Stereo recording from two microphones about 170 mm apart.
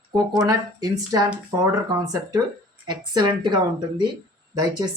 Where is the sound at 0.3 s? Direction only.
20° right (ahead or behind).